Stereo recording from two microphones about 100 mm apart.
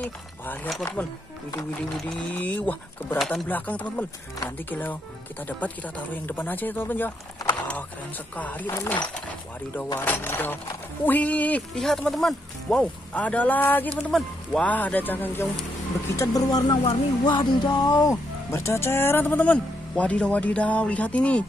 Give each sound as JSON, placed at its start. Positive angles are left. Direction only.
{"t": 2.0, "sound": "speech", "side_deg": 5}
{"t": 11.8, "sound": "speech", "side_deg": 5}
{"t": 13.1, "sound": "speech", "side_deg": 15}
{"t": 14.1, "sound": "speech", "side_deg": 5}
{"t": 14.7, "sound": "speech", "side_deg": 15}
{"t": 16.2, "sound": "speech", "side_deg": 35}
{"t": 17.3, "sound": "a sound", "side_deg": 45}
{"t": 18.1, "sound": "speech", "side_deg": 30}